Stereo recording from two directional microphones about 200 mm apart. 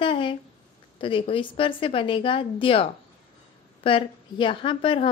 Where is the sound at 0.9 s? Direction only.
25° left (ahead or behind).